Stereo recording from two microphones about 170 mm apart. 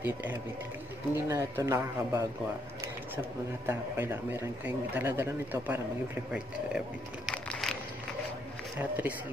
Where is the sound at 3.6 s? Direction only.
15° right (ahead or behind).